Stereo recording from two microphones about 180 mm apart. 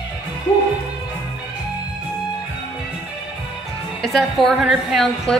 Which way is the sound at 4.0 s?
Centre (ahead or behind).